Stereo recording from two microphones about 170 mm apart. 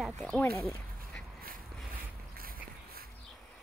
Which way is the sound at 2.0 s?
60° right (ahead or behind).